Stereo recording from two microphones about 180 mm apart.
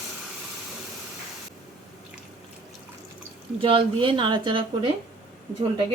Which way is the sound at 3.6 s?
30° right (ahead or behind).